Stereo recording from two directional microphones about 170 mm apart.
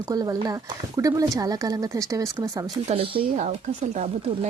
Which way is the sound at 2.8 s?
35° right (ahead or behind).